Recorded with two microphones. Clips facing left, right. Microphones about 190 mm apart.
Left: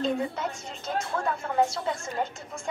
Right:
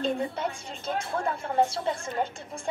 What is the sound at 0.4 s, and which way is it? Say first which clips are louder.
A woman's voice: right 1 dB; 30° right (ahead or behind).